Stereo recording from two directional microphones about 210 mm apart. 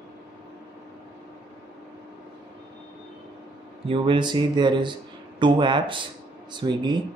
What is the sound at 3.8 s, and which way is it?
Speech, 25° right (ahead or behind).